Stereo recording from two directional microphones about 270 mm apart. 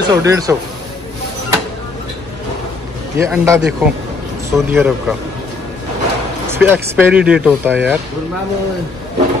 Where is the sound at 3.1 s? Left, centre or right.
Centre.